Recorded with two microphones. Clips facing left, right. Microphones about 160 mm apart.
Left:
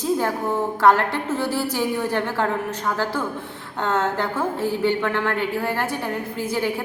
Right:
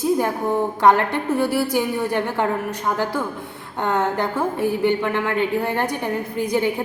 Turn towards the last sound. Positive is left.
turn(degrees=-20)  # may be behind; listen again after turning